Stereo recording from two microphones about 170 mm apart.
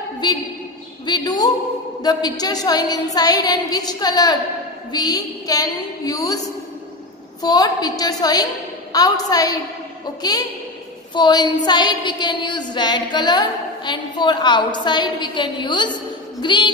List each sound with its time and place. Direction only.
1.0 s a woman's voice: 25° left (ahead or behind)
7.4 s a woman's voice: 25° left (ahead or behind)
11.1 s a woman's voice: 25° left (ahead or behind)